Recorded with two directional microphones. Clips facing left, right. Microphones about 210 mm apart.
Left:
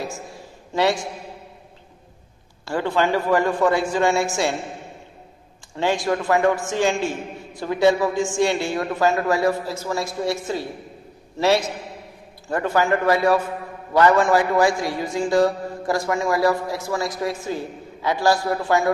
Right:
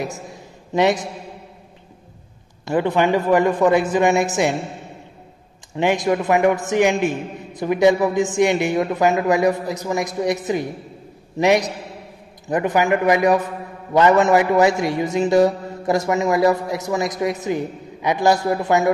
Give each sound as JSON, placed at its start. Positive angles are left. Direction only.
{"t": 0.0, "sound": "a sound", "side_deg": -20}
{"t": 2.6, "sound": "a man's voice", "side_deg": -20}
{"t": 5.8, "sound": "a man's voice", "side_deg": -20}